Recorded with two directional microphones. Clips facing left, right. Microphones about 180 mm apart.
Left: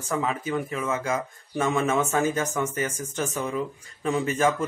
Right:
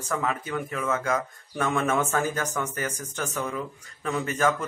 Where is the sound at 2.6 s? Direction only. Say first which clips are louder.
Left 3 dB; 10° left (ahead or behind).